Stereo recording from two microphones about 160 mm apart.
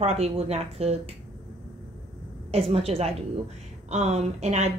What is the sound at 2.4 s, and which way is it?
A woman's voice, 40° right (ahead or behind).